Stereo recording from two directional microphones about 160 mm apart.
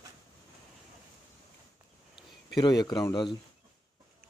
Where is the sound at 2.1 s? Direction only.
25° left (ahead or behind).